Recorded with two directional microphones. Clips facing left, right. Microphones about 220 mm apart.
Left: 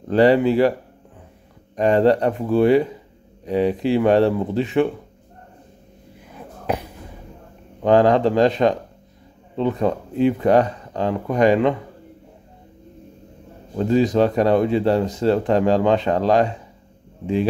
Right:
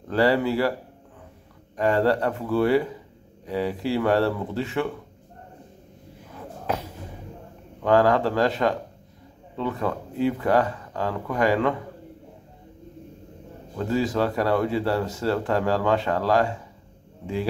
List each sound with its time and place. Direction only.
0.1 s speech: 20° left (ahead or behind)
1.8 s speech: 20° left (ahead or behind)
6.3 s a sound: 15° left (ahead or behind)
7.8 s speech: 20° left (ahead or behind)
13.7 s speech: 20° left (ahead or behind)